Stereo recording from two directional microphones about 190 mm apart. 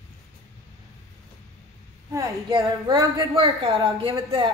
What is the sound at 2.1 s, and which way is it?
Speech, 20° right (ahead or behind).